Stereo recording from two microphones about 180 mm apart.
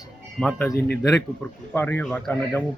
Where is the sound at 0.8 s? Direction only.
65° left (ahead or behind).